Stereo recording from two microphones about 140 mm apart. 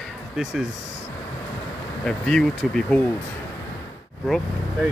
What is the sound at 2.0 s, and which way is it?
Speech, 5° left (ahead or behind).